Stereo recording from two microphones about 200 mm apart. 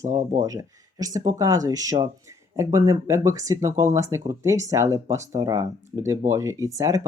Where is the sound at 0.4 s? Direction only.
15° right (ahead or behind).